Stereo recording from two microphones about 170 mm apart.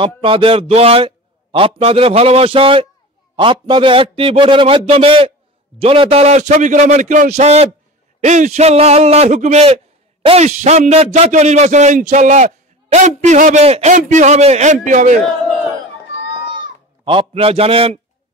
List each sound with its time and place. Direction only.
0.0 s a man's voice: 30° right (ahead or behind); by 15.1 s 45° right (ahead or behind)
17.0 s a man's voice: 30° right (ahead or behind)